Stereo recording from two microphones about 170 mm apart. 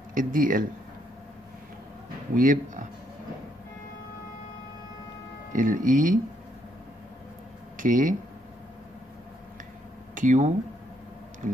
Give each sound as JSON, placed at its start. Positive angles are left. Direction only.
{"t": 0.1, "sound": "speech", "side_deg": -55}
{"t": 2.3, "sound": "speech", "side_deg": -50}
{"t": 5.5, "sound": "speech", "side_deg": -50}
{"t": 7.7, "sound": "speech", "side_deg": -50}
{"t": 10.1, "sound": "speech", "side_deg": -45}